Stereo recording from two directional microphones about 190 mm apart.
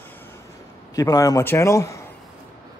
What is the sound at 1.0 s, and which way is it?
Speech, 20° left (ahead or behind).